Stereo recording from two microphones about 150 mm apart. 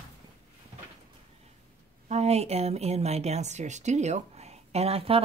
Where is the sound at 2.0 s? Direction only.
45° right (ahead or behind).